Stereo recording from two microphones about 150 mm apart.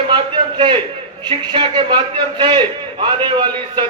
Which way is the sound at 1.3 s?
30° right (ahead or behind).